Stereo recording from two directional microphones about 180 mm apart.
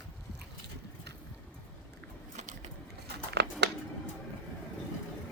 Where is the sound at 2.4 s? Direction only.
40° right (ahead or behind).